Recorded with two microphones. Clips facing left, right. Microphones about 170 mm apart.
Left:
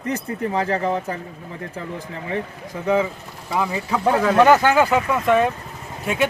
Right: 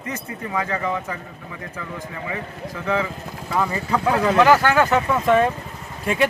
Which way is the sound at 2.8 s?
15° left (ahead or behind).